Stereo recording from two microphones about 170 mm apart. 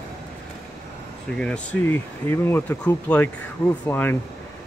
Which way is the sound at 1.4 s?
5° left (ahead or behind).